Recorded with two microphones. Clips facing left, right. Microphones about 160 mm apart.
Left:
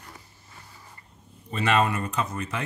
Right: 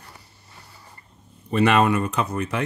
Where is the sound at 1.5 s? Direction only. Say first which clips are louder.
Right 6 dB; 65° right (ahead or behind).